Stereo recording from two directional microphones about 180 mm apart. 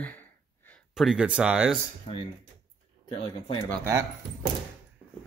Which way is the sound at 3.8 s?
15° right (ahead or behind).